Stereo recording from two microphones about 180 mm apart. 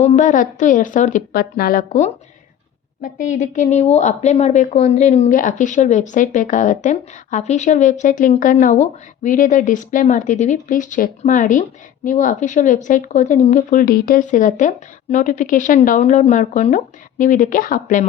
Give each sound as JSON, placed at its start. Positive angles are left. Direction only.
{"t": 0.0, "sound": "a woman's voice", "side_deg": 40}
{"t": 1.9, "sound": "a woman's voice", "side_deg": 40}